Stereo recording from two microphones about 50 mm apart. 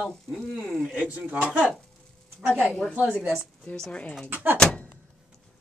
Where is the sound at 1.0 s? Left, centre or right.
Right.